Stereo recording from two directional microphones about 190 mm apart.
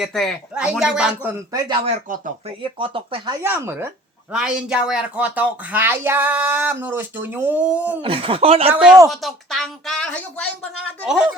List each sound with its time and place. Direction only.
0.0 s a woman's voice: centre (ahead or behind)
1.5 s speech: 25° right (ahead or behind)
2.0 s speech: 45° right (ahead or behind)
2.7 s speech: 30° right (ahead or behind)
3.4 s speech: 10° right (ahead or behind)
8.0 s speech: 30° right (ahead or behind)
8.7 s a woman's voice: 5° right (ahead or behind)
11.0 s a woman's voice: 5° right (ahead or behind)